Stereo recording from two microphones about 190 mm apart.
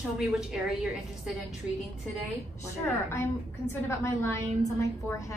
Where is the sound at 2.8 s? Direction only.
15° left (ahead or behind).